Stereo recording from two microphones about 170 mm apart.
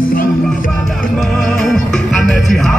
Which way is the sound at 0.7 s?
Centre (ahead or behind).